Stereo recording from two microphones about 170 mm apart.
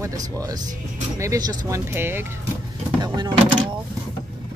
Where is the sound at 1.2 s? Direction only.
20° right (ahead or behind).